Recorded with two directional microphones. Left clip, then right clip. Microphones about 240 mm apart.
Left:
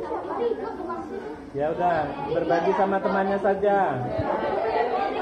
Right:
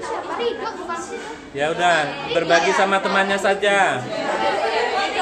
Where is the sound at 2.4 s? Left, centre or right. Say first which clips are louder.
Right 6 dB; right.